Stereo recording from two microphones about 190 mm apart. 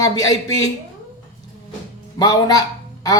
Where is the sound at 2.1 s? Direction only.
20° left (ahead or behind).